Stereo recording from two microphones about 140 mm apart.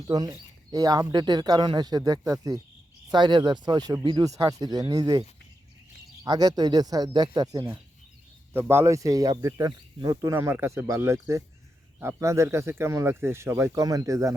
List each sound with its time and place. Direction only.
0.1 s speech: 30° right (ahead or behind)
3.1 s speech: 35° right (ahead or behind)
6.2 s speech: 30° right (ahead or behind)